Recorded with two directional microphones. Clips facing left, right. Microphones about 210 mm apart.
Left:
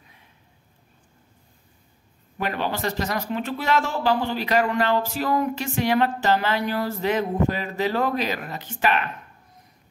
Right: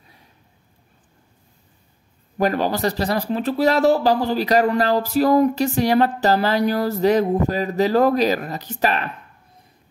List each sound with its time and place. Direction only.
2.3 s a man's voice: 40° right (ahead or behind)